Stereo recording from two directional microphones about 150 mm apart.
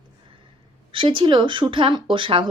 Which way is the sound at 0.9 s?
35° right (ahead or behind).